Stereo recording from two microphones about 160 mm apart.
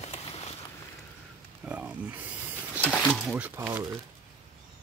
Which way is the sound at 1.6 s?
10° right (ahead or behind).